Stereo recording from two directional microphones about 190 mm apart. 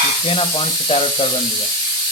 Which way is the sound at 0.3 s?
30° left (ahead or behind).